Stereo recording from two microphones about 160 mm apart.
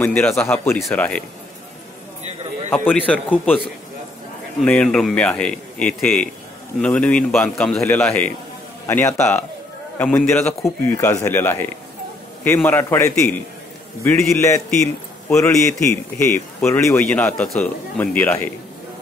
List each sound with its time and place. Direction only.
0.0 s a man's voice: 15° left (ahead or behind)
2.7 s a man's voice: 10° left (ahead or behind)
4.6 s a man's voice: 5° left (ahead or behind)
14.7 s a man's voice: 5° left (ahead or behind)
15.3 s a man's voice: 20° left (ahead or behind)